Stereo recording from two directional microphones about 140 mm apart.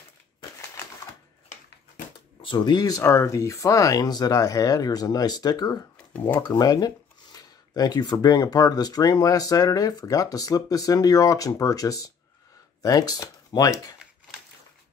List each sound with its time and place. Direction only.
2.1 s speech: 35° left (ahead or behind)